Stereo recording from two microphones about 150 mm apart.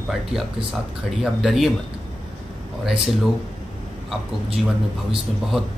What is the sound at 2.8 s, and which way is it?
Speech, 5° right (ahead or behind).